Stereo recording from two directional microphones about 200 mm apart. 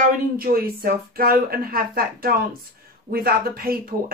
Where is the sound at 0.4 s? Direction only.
45° right (ahead or behind).